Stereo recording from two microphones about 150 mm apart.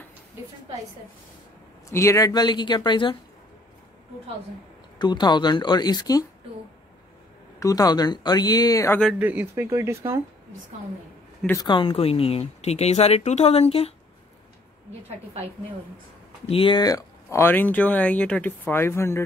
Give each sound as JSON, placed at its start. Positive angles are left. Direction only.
{"t": 1.9, "sound": "speech", "side_deg": 20}
{"t": 4.9, "sound": "speech", "side_deg": 30}
{"t": 7.6, "sound": "speech", "side_deg": 25}
{"t": 9.2, "sound": "speech", "side_deg": -10}
{"t": 11.6, "sound": "speech", "side_deg": 35}
{"t": 16.4, "sound": "speech", "side_deg": 35}